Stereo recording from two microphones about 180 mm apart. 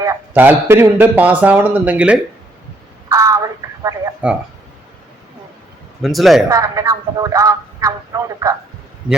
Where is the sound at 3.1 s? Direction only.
20° right (ahead or behind).